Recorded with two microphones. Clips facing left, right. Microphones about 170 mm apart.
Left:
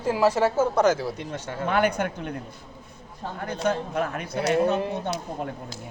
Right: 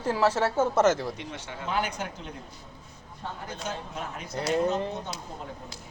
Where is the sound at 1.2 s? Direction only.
45° left (ahead or behind).